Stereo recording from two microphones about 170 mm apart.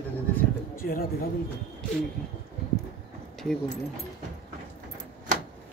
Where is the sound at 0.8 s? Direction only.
55° left (ahead or behind).